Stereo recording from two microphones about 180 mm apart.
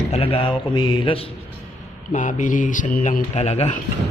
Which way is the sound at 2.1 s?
45° left (ahead or behind).